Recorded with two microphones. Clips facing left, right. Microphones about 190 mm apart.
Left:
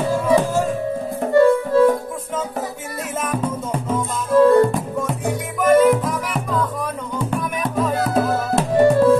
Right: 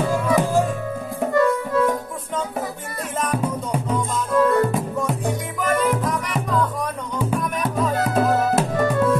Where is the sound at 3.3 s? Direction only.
10° right (ahead or behind).